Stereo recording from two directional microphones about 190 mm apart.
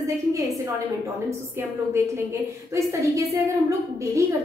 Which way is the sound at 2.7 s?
15° right (ahead or behind).